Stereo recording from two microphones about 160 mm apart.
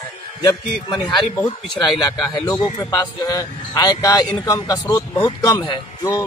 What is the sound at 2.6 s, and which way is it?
Speech, 25° left (ahead or behind).